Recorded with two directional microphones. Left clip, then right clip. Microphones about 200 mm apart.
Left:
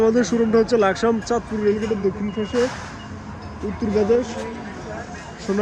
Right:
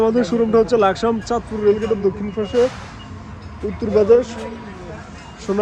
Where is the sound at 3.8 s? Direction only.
15° right (ahead or behind).